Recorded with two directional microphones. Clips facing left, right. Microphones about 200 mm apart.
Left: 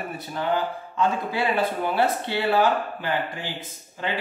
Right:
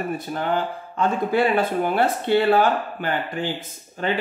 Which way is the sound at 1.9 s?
55° right (ahead or behind).